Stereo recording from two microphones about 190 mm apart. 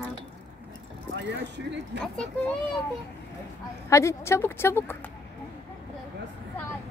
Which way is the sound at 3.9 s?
15° left (ahead or behind).